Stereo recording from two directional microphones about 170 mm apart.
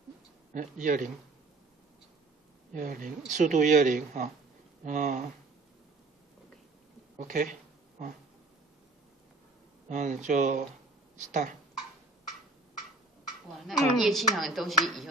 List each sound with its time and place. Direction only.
0.5 s speech: 50° right (ahead or behind)
2.7 s speech: 50° right (ahead or behind)
7.2 s speech: 45° right (ahead or behind)
9.8 s speech: 45° right (ahead or behind)
13.6 s a woman's voice: centre (ahead or behind)